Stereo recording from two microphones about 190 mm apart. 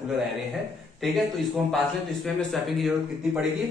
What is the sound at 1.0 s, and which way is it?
Speech, centre (ahead or behind).